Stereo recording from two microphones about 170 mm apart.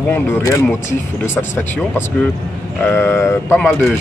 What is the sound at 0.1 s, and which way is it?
Speech, 15° left (ahead or behind).